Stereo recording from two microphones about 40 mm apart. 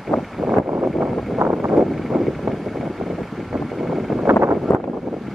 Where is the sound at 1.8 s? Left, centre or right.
Centre.